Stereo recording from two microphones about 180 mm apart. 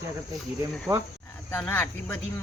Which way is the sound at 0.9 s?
15° right (ahead or behind).